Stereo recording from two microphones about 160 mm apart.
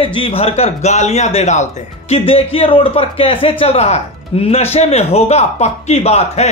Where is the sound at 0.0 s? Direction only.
35° left (ahead or behind).